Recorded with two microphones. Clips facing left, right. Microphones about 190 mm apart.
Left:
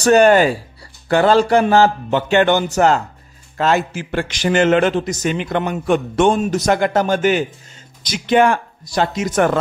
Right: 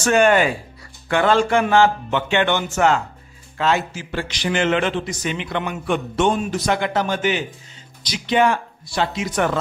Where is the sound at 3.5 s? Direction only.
45° left (ahead or behind).